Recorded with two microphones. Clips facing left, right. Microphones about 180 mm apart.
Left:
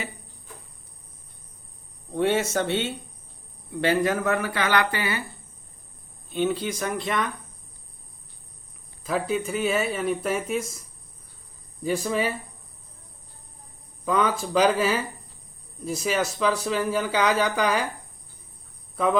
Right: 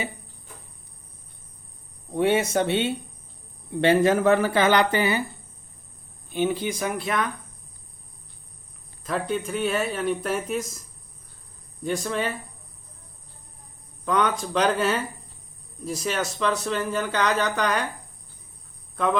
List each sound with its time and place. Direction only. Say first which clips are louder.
2.1 s speech: right 2 dB; 15° right (ahead or behind)
6.3 s speech: even; 10° right (ahead or behind)
9.0 s speech: left 1 dB; 5° left (ahead or behind)
14.0 s speech: even; 5° left (ahead or behind)